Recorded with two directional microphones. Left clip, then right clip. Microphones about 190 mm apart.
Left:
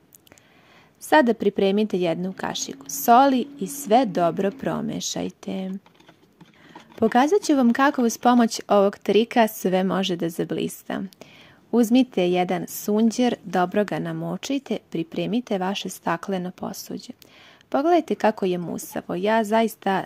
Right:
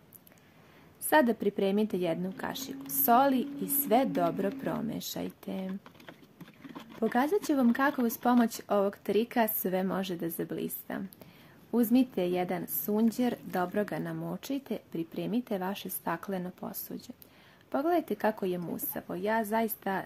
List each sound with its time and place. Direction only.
1.1 s a woman's voice: 35° left (ahead or behind)
7.0 s a woman's voice: 40° left (ahead or behind)